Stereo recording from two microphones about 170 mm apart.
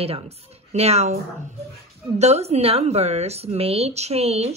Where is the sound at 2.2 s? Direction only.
40° right (ahead or behind).